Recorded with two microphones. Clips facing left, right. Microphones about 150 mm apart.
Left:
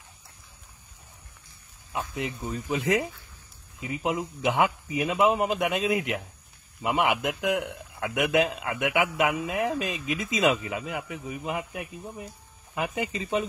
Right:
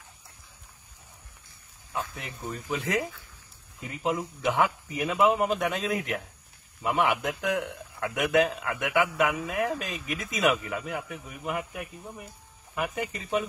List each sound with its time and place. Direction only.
1.9 s a man's voice: 15° left (ahead or behind)
12.7 s speech: 20° left (ahead or behind)